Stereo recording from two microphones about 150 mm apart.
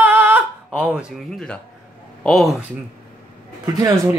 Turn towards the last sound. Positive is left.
turn(degrees=-25)  # may be behind; listen again after turning